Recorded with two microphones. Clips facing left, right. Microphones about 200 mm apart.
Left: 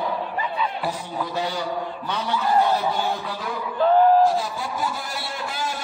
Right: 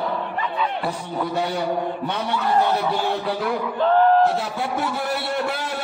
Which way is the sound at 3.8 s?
10° left (ahead or behind).